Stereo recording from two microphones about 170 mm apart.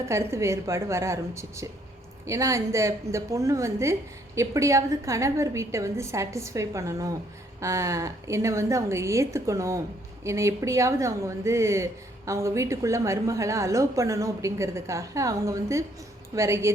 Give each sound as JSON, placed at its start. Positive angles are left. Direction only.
{"t": 0.1, "sound": "a woman's voice", "side_deg": -15}